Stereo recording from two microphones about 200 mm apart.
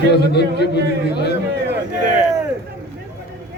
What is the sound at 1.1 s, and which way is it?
Speech, 55° left (ahead or behind).